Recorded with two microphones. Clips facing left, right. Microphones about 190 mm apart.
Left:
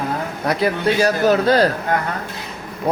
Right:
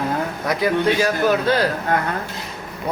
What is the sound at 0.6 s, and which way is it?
Speech, 40° left (ahead or behind).